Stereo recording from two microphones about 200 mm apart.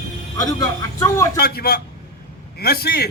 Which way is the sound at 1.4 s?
50° left (ahead or behind).